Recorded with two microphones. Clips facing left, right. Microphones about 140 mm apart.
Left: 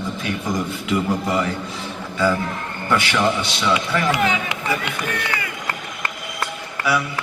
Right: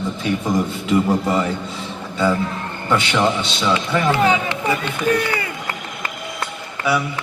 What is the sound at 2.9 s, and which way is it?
Speech, 25° right (ahead or behind).